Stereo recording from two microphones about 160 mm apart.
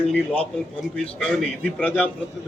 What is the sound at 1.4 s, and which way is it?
Speech, 5° left (ahead or behind).